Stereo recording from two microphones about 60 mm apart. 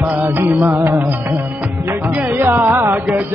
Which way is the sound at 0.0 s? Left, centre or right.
Right.